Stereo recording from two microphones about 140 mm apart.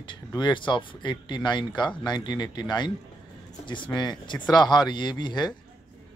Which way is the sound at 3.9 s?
30° left (ahead or behind).